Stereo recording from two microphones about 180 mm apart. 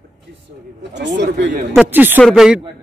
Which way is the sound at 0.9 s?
75° right (ahead or behind).